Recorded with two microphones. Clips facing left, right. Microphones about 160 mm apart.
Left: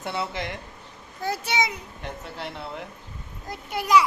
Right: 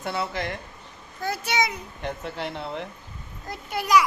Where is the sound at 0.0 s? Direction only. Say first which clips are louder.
Right 1 dB; 20° left (ahead or behind).